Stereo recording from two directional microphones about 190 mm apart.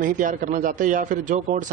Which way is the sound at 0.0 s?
45° right (ahead or behind).